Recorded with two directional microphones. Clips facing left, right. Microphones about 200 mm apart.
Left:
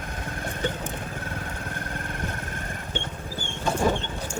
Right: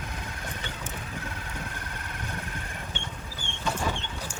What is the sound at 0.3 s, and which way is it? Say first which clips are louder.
Vehicle: left 8 dB; 50° left (ahead or behind).